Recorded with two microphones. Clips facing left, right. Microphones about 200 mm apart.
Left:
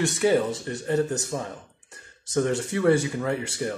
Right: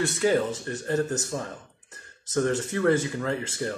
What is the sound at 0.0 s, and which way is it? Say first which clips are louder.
Speech: left 2 dB; 15° left (ahead or behind).